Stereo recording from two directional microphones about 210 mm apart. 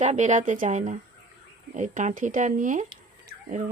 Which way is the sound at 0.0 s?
35° right (ahead or behind).